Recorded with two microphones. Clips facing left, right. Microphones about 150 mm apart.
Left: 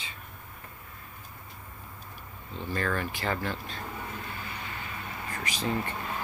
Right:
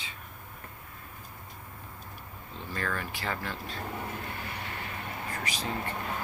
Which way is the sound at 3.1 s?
Centre (ahead or behind).